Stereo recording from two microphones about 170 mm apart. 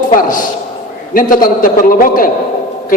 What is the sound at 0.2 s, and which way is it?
A man's voice, 50° left (ahead or behind).